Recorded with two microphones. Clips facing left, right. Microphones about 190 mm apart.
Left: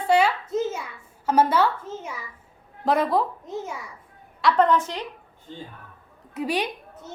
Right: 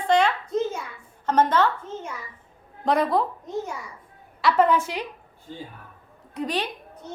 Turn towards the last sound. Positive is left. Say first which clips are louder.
# left 1 dB
turn(degrees=10)  # may be behind; listen again after turning